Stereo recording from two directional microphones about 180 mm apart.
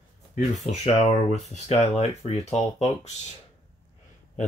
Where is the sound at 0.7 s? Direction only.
40° left (ahead or behind).